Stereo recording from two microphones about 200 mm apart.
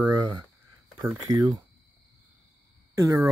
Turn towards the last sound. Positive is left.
turn(degrees=-15)  # may be behind; listen again after turning